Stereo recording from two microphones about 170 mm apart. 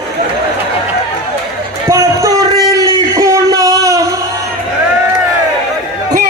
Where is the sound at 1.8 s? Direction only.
15° right (ahead or behind).